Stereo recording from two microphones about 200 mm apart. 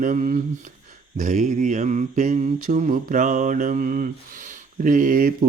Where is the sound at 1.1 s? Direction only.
40° right (ahead or behind).